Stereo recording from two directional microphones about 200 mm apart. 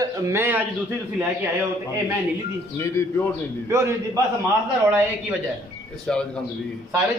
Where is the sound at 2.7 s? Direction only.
15° left (ahead or behind).